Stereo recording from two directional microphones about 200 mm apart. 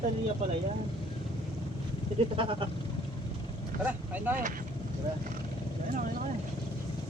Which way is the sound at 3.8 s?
10° right (ahead or behind).